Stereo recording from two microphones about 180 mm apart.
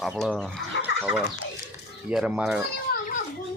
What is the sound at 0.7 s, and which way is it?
Chicken, 90° left.